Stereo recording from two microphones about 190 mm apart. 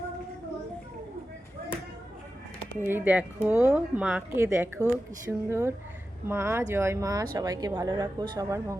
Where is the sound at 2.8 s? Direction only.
10° right (ahead or behind).